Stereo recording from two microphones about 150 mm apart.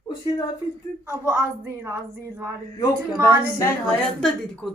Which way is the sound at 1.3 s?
15° right (ahead or behind).